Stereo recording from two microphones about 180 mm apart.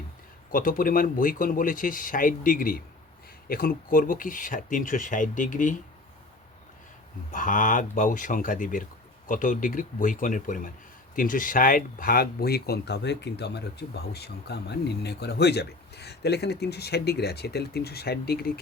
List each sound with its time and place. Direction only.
0.5 s speech: 50° left (ahead or behind)
7.3 s speech: 50° left (ahead or behind)